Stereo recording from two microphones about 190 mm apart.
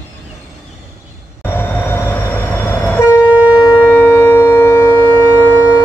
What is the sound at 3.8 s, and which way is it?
Shofar, 10° left (ahead or behind).